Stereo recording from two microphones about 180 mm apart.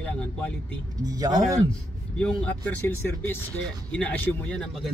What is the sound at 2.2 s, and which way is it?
Speech, 5° left (ahead or behind).